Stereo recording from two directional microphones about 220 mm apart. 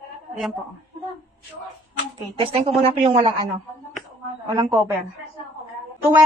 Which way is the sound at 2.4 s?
25° right (ahead or behind).